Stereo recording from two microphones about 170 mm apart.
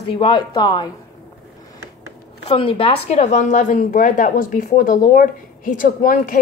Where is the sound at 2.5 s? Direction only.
30° left (ahead or behind); by 6.4 s 50° left (ahead or behind).